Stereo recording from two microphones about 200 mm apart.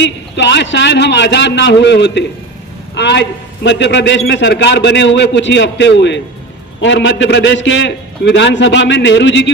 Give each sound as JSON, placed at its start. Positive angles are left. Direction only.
{"t": 0.0, "sound": "a man's voice", "side_deg": 60}